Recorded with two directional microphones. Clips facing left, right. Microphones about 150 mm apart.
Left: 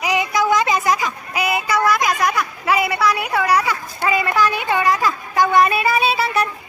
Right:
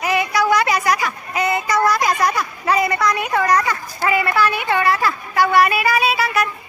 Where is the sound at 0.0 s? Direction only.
15° left (ahead or behind).